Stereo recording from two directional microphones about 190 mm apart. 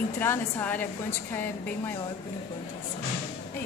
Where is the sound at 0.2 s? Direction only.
10° left (ahead or behind).